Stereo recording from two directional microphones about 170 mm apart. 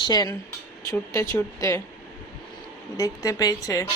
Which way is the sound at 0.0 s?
25° left (ahead or behind).